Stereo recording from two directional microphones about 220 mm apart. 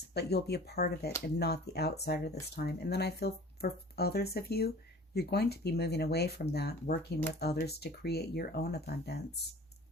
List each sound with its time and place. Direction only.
0.1 s speech: 45° left (ahead or behind)